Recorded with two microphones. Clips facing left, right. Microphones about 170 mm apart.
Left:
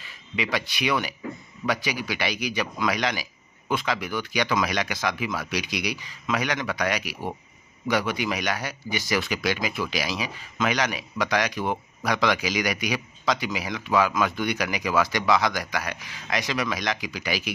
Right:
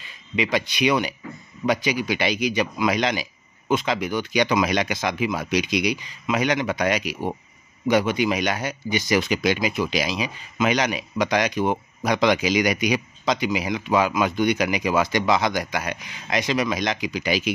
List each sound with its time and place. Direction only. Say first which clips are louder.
0.0 s speech: right 5 dB; 20° right (ahead or behind)